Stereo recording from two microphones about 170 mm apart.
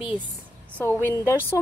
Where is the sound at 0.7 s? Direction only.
15° left (ahead or behind).